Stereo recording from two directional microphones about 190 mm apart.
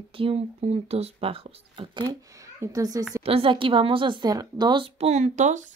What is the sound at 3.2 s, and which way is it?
Speech, 30° right (ahead or behind).